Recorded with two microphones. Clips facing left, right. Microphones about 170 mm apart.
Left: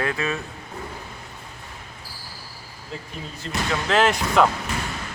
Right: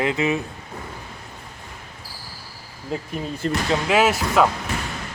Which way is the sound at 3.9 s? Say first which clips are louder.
Even; 5° right (ahead or behind).